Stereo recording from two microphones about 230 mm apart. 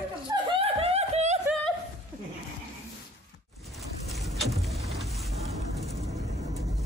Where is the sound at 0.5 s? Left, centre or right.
Right.